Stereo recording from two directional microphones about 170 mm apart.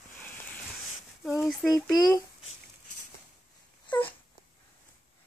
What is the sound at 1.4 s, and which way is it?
Speech, centre (ahead or behind).